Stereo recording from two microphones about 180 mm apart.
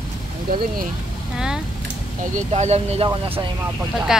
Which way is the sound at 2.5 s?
35° right (ahead or behind).